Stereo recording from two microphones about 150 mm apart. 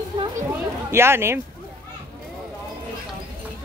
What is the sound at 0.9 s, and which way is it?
Speech, 15° right (ahead or behind).